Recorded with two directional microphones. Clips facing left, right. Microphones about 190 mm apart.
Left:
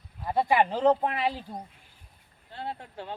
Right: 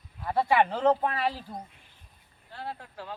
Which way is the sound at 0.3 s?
15° left (ahead or behind).